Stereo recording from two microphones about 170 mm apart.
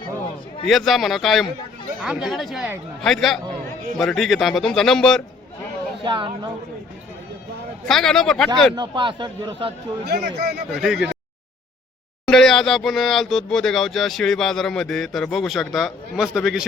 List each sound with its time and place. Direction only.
0.7 s speech: centre (ahead or behind)
6.0 s speech: 30° right (ahead or behind)
7.9 s speech: centre (ahead or behind)
8.7 s speech: 30° right (ahead or behind)
10.1 s speech: 65° right (ahead or behind)
10.8 s speech: centre (ahead or behind)
12.2 s speech: 5° left (ahead or behind)